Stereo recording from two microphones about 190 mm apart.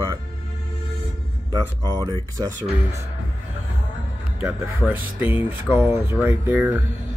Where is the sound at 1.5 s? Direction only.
20° right (ahead or behind).